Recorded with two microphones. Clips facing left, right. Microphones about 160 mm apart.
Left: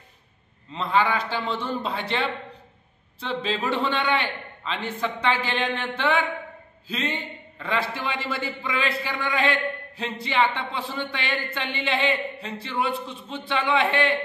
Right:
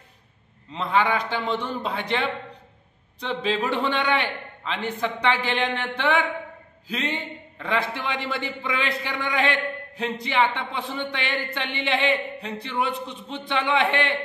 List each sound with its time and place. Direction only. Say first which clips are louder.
0.9 s a man's voice: even; 15° right (ahead or behind)